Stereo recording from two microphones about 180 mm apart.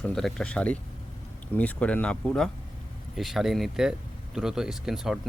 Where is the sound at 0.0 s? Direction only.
5° left (ahead or behind).